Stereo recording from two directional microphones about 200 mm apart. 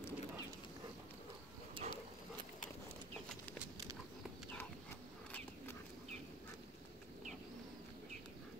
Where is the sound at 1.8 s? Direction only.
25° right (ahead or behind).